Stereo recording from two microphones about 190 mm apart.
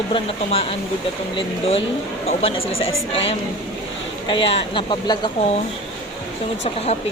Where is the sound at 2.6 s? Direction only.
90° left.